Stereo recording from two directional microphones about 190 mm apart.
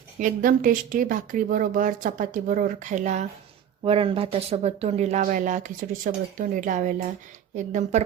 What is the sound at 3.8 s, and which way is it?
A woman's voice, 30° right (ahead or behind).